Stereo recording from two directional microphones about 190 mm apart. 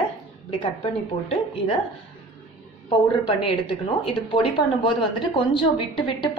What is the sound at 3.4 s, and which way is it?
A woman's voice, 30° left (ahead or behind).